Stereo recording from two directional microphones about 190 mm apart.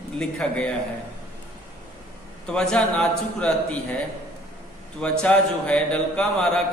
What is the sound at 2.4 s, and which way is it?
A man's voice, 5° left (ahead or behind).